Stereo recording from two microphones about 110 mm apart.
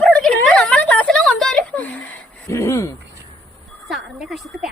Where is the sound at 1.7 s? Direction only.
15° left (ahead or behind).